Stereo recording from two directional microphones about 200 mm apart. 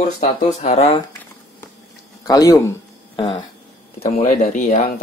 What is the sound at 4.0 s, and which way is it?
Speech, 35° left (ahead or behind).